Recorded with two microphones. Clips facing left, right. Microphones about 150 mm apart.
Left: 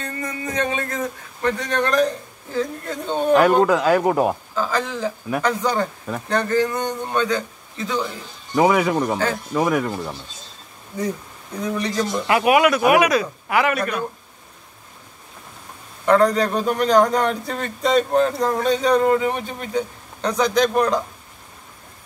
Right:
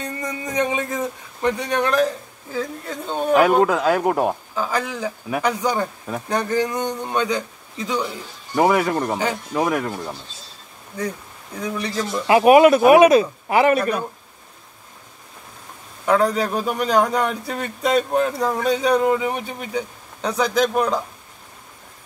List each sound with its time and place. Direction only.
0.0 s a man's voice: 15° right (ahead or behind)
4.6 s a man's voice: 10° right (ahead or behind)
8.0 s a man's voice: centre (ahead or behind)
11.5 s a man's voice: 5° right (ahead or behind)
12.3 s speech: 30° right (ahead or behind)
16.1 s a man's voice: 5° right (ahead or behind)